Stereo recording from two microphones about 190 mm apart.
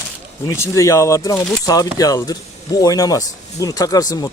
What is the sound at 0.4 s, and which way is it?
Speech, 15° left (ahead or behind).